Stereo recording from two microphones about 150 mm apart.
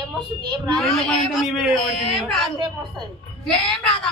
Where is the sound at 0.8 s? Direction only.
Centre (ahead or behind).